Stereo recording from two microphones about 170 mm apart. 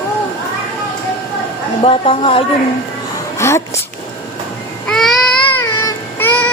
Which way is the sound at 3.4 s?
15° left (ahead or behind).